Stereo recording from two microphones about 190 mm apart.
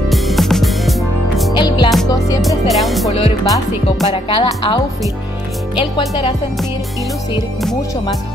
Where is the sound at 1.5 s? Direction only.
25° left (ahead or behind).